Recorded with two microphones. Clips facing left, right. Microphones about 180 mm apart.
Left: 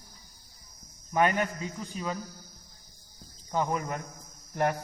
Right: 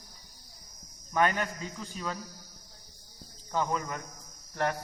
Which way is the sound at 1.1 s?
10° left (ahead or behind).